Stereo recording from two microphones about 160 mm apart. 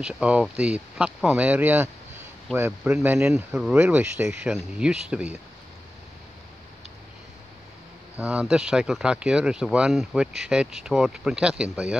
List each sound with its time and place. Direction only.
0.0 s speech: 5° right (ahead or behind)
8.2 s speech: 5° right (ahead or behind)